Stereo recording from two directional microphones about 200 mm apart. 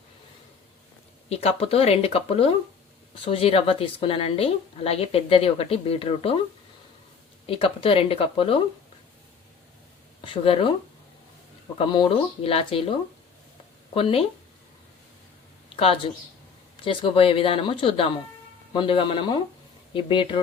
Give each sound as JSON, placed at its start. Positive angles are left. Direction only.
{"t": 1.3, "sound": "speech", "side_deg": 30}
{"t": 7.4, "sound": "speech", "side_deg": 25}
{"t": 10.2, "sound": "speech", "side_deg": 25}
{"t": 11.8, "sound": "speech", "side_deg": 25}
{"t": 13.9, "sound": "speech", "side_deg": 30}
{"t": 15.7, "sound": "speech", "side_deg": 25}